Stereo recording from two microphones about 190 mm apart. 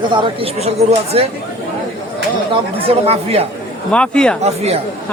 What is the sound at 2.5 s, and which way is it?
Speech, 30° right (ahead or behind).